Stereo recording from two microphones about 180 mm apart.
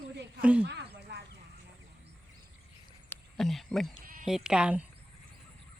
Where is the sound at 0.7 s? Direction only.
70° right (ahead or behind).